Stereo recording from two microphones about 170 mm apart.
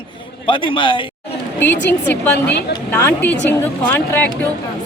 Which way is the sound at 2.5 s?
75° left (ahead or behind).